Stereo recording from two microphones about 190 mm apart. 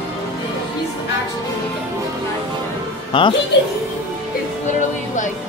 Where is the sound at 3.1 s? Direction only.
25° left (ahead or behind).